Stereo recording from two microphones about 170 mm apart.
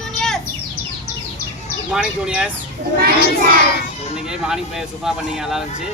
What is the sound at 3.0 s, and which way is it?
Speech, 65° right (ahead or behind).